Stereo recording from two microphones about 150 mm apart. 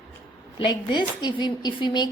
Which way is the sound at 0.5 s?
30° left (ahead or behind).